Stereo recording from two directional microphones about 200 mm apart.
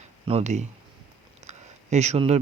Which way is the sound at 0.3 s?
35° right (ahead or behind).